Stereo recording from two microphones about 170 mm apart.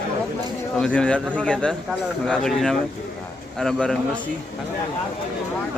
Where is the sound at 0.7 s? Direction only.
5° left (ahead or behind).